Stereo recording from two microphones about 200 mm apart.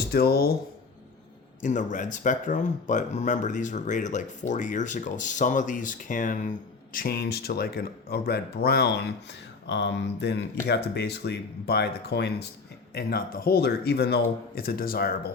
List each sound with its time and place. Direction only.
0.1 s speech: 50° left (ahead or behind)
1.6 s speech: 40° left (ahead or behind)